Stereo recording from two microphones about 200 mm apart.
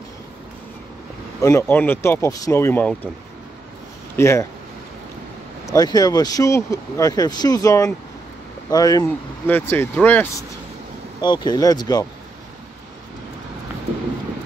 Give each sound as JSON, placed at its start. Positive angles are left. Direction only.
{"t": 1.4, "sound": "speech", "side_deg": 10}
{"t": 4.2, "sound": "speech", "side_deg": 15}
{"t": 5.7, "sound": "speech", "side_deg": 20}
{"t": 11.1, "sound": "speech", "side_deg": 20}